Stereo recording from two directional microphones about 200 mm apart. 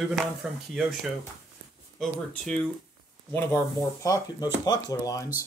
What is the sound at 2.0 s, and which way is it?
Speech, centre (ahead or behind).